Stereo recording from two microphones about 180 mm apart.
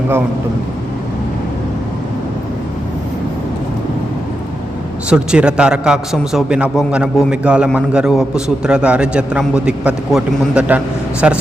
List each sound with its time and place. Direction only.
5.0 s a man's voice: 5° right (ahead or behind)